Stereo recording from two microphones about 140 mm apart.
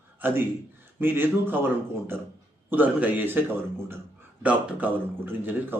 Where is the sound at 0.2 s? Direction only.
15° right (ahead or behind).